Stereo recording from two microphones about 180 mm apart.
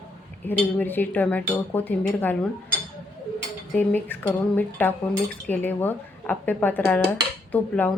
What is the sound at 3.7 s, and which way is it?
Speech, 10° left (ahead or behind).